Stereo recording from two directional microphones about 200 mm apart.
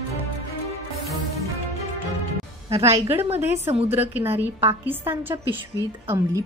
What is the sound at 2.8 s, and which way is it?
A woman's voice, 15° right (ahead or behind).